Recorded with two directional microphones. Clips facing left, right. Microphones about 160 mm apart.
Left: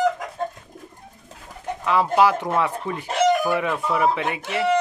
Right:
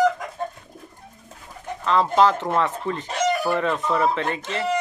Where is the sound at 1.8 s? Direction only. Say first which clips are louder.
Even; 10° left (ahead or behind).